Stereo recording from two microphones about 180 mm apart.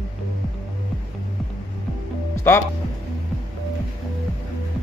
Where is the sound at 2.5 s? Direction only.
15° left (ahead or behind).